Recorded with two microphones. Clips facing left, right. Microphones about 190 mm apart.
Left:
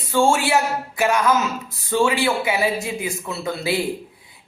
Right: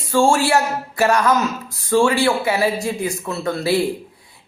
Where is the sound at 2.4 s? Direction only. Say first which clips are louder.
Right 3 dB; 5° left (ahead or behind).